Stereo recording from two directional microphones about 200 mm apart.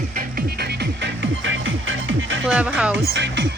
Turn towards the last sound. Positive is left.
turn(degrees=-60)  # may be behind; listen again after turning